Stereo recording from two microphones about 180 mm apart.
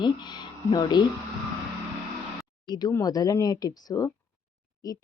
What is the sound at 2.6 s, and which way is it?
A woman's voice, 25° left (ahead or behind).